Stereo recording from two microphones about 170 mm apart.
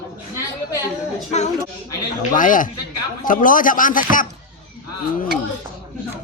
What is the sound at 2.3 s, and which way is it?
Speech, 50° left (ahead or behind).